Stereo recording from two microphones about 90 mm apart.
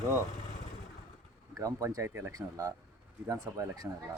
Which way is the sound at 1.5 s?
35° right (ahead or behind).